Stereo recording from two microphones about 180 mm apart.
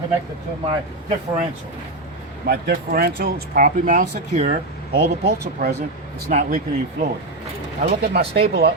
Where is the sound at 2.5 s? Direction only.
55° right (ahead or behind); by 4.5 s 40° right (ahead or behind).